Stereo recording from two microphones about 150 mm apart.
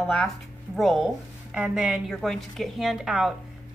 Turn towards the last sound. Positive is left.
turn(degrees=-5)  # may be behind; listen again after turning